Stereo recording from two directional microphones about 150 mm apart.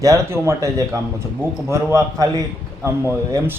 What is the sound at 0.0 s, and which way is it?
Speech, 20° right (ahead or behind).